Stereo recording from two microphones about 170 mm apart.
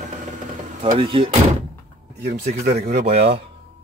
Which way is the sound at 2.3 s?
40° right (ahead or behind).